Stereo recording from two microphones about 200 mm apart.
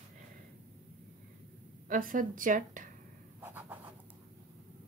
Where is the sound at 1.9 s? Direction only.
45° right (ahead or behind).